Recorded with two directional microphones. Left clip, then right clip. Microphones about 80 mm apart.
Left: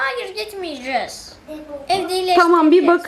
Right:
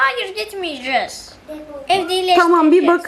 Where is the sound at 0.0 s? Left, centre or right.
Centre.